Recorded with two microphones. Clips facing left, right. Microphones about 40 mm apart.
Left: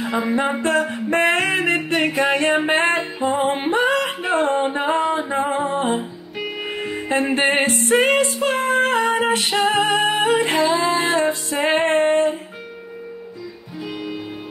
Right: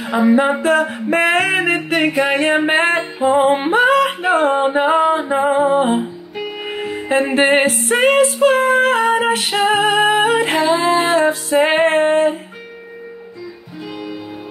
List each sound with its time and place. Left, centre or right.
0.0 s music: centre
3.5 s music: right
3.8 s music: centre
6.3 s music: centre
7.3 s music: right
7.7 s music: centre
8.4 s female singing: centre
8.9 s music: centre
10.0 s music: right
11.5 s music: centre
11.9 s music: centre